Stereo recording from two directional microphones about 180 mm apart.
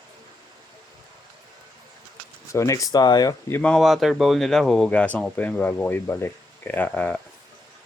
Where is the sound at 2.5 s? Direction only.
15° left (ahead or behind).